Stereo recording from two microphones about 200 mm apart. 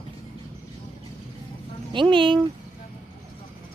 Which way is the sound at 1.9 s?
25° right (ahead or behind).